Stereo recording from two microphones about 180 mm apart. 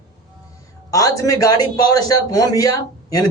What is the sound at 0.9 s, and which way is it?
A man's voice, 20° left (ahead or behind).